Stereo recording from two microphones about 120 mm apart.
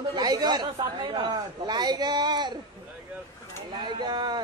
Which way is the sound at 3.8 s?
40° right (ahead or behind).